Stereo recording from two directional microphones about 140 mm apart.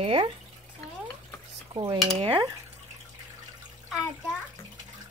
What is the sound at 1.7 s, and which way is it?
Cutlery, 50° right (ahead or behind).